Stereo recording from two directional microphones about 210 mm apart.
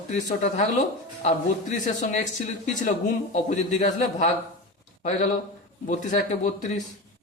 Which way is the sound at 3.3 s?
35° left (ahead or behind).